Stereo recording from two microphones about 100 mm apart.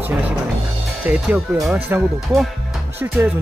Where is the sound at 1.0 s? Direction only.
15° right (ahead or behind).